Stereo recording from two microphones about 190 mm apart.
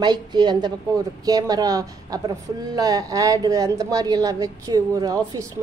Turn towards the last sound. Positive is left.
turn(degrees=-15)  # may be behind; listen again after turning